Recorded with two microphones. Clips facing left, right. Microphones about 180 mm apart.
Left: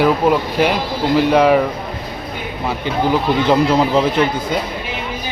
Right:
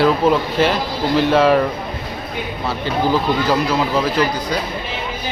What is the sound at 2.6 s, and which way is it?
A man's voice, 15° left (ahead or behind).